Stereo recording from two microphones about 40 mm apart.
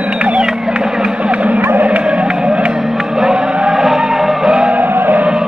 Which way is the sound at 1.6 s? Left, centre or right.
Right.